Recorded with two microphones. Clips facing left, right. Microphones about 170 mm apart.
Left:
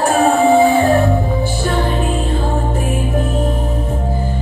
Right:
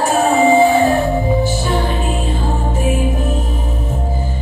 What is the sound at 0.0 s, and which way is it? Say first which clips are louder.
Music: left 1 dB; 60° left (ahead or behind).